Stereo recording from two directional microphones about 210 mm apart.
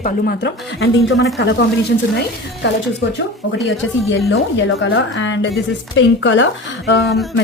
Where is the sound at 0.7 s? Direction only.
70° left (ahead or behind).